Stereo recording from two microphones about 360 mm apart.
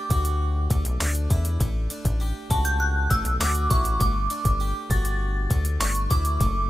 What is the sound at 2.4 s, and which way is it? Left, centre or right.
Music, centre.